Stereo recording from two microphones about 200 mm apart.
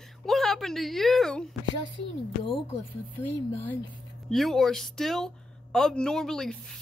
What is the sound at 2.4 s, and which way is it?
Speech, 25° left (ahead or behind).